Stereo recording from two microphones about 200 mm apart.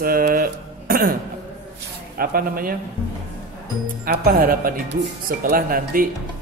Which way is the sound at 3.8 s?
45° right (ahead or behind).